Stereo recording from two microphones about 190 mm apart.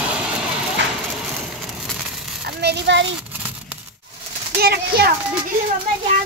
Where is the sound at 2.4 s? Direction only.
60° right (ahead or behind).